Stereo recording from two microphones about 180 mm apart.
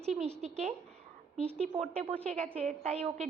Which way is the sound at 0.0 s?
40° right (ahead or behind).